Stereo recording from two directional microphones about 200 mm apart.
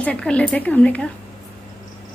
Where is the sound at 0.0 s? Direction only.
5° left (ahead or behind).